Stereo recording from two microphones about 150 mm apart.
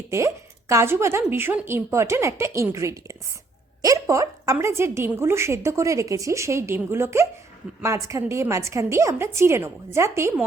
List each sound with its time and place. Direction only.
0.1 s a woman's voice: 20° right (ahead or behind)